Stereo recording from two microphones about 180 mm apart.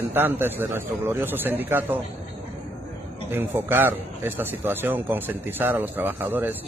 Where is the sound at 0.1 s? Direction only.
10° right (ahead or behind).